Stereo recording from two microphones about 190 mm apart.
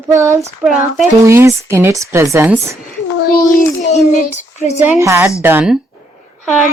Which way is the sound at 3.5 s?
40° left (ahead or behind).